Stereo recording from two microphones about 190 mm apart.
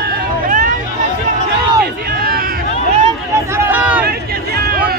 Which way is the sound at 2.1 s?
50° right (ahead or behind).